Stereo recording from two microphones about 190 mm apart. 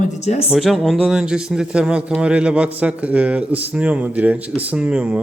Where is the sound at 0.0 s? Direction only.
35° left (ahead or behind).